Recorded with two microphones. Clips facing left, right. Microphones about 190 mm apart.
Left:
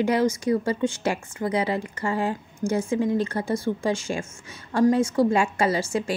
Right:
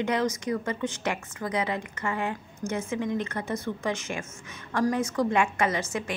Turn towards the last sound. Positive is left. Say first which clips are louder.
# left 5 dB
turn(degrees=30)  # may be behind; listen again after turning